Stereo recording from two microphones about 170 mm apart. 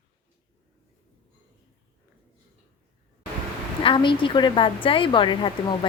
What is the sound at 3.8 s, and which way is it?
A woman's voice, 30° left (ahead or behind).